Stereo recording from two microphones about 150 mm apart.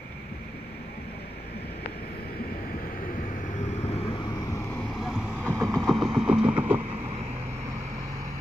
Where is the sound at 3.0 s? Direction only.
65° left (ahead or behind); by 4.2 s 45° left (ahead or behind).